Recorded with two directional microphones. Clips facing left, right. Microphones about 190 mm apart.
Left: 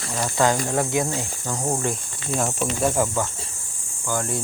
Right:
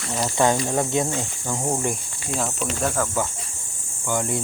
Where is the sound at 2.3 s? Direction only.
5° left (ahead or behind).